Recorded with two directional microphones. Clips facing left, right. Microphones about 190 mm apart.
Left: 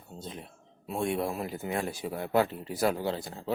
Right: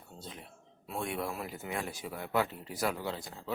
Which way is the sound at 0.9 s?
25° left (ahead or behind).